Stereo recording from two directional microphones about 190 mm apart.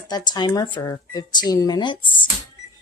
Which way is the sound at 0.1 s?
20° left (ahead or behind).